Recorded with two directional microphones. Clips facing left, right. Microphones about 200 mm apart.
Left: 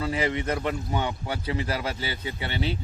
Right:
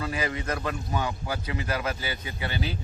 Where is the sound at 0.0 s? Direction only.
25° left (ahead or behind).